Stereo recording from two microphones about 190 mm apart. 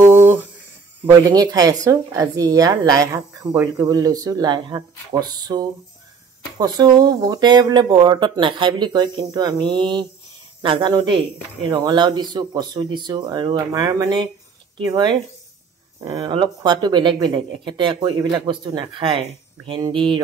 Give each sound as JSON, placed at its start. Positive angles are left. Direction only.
{"t": 0.0, "sound": "humming", "side_deg": -10}
{"t": 1.2, "sound": "speech", "side_deg": -20}